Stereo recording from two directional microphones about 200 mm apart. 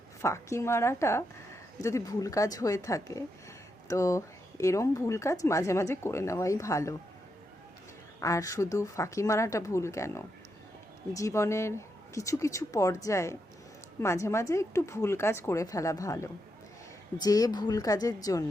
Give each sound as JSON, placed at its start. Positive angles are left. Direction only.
{"t": 0.2, "sound": "speech", "side_deg": 15}
{"t": 8.2, "sound": "speech", "side_deg": 15}